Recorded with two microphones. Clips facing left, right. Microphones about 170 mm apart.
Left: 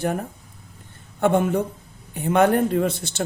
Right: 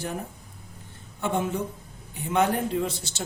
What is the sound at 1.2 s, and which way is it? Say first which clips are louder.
A man's voice: left 8 dB; 60° left (ahead or behind).